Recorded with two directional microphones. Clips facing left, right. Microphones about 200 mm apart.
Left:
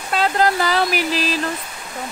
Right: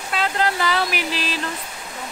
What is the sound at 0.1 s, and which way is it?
Speech, 40° left (ahead or behind).